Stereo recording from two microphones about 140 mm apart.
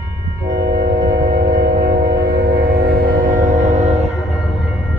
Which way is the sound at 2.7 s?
90° right.